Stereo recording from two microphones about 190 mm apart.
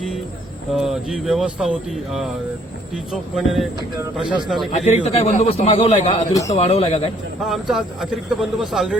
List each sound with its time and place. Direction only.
0.7 s speech: 5° right (ahead or behind)
4.9 s a man's voice: 35° left (ahead or behind)
7.4 s speech: centre (ahead or behind)